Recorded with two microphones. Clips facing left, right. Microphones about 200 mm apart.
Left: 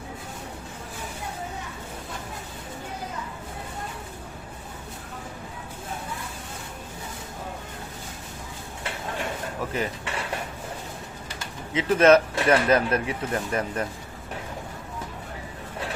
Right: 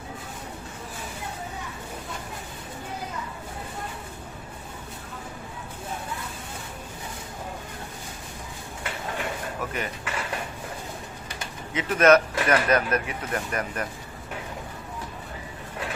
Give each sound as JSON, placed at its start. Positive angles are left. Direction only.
{"t": 9.7, "sound": "speech", "side_deg": 30}
{"t": 11.7, "sound": "speech", "side_deg": 30}